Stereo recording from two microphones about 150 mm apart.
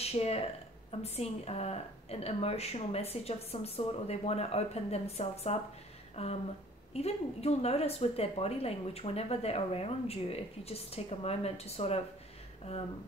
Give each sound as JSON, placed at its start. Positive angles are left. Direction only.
{"t": 0.0, "sound": "a woman's voice", "side_deg": 45}